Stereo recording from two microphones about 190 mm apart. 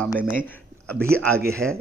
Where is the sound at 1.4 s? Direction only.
15° right (ahead or behind).